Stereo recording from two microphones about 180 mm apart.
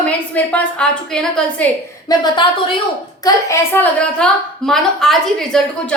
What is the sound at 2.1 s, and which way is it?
A woman's voice, 20° left (ahead or behind).